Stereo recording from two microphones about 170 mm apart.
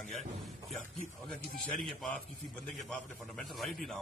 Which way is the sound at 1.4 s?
65° left (ahead or behind).